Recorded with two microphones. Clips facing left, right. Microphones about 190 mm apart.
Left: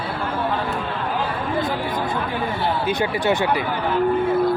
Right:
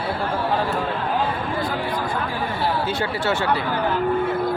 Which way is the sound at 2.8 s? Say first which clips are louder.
Left 3 dB; 15° left (ahead or behind).